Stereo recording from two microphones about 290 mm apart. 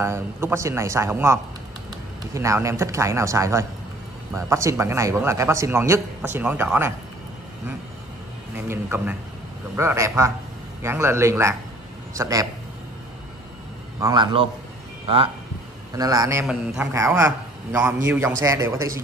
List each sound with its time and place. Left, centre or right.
0.0 s a man's voice: centre
8.5 s a man's voice: centre
14.0 s a man's voice: centre